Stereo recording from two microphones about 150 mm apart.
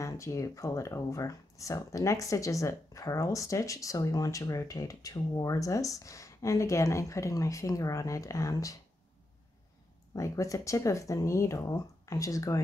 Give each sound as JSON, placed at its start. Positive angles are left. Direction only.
{"t": 0.0, "sound": "speech", "side_deg": 20}
{"t": 10.1, "sound": "speech", "side_deg": 20}